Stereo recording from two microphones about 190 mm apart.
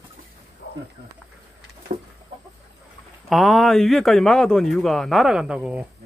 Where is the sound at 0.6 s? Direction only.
60° left (ahead or behind).